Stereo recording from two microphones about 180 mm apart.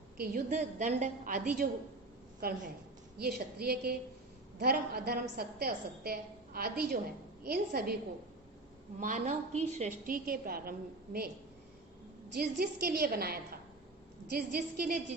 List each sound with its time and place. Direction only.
0.2 s a woman's voice: 50° right (ahead or behind)
9.0 s a woman's voice: 45° right (ahead or behind)
12.4 s a woman's voice: 55° right (ahead or behind)